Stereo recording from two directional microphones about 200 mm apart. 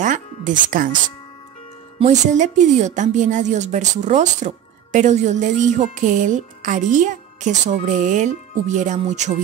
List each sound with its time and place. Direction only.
0.0 s speech: 40° right (ahead or behind)
2.0 s speech: 35° right (ahead or behind)